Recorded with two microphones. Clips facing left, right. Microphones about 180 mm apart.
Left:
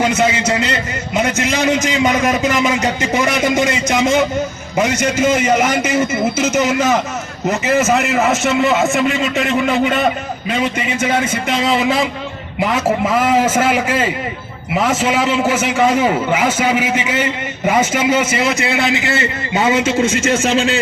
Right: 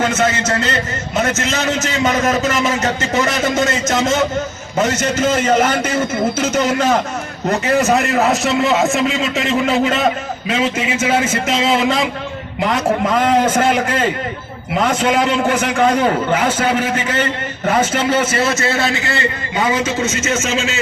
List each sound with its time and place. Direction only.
0.2 s a man's voice: 10° left (ahead or behind); by 20.7 s 35° left (ahead or behind)